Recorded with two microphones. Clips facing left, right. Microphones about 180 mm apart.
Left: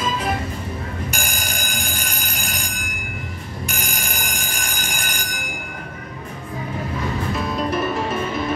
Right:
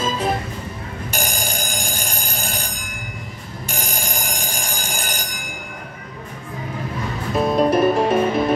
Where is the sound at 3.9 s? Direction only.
30° right (ahead or behind).